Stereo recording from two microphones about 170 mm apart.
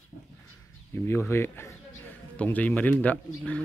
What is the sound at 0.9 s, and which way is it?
A man's voice, 15° left (ahead or behind).